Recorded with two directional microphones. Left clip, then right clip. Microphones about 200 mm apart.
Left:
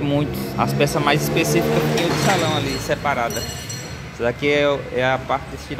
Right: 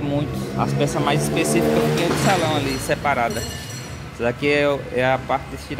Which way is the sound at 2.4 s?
15° right (ahead or behind).